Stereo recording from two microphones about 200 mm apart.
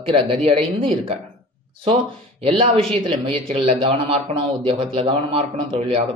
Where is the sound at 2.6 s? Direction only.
30° right (ahead or behind).